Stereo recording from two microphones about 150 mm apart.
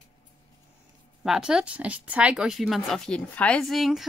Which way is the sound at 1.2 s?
5° right (ahead or behind).